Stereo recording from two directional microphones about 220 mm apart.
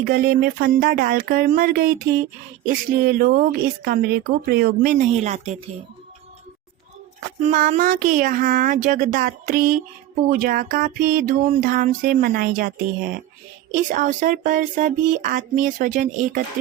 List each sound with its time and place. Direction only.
0.0 s speech: 40° right (ahead or behind)
7.4 s speech: 35° right (ahead or behind)